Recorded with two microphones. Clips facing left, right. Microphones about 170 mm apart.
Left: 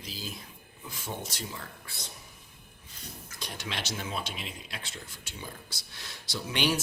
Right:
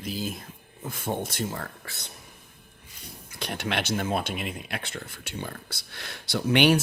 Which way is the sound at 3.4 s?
60° right (ahead or behind).